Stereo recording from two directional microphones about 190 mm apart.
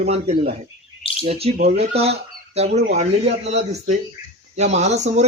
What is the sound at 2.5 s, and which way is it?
Speech, 35° right (ahead or behind).